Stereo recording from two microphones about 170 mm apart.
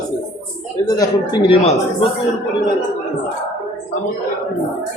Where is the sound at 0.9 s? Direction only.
25° left (ahead or behind).